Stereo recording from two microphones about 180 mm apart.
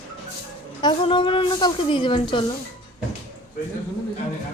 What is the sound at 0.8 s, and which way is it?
A woman's voice, 25° left (ahead or behind).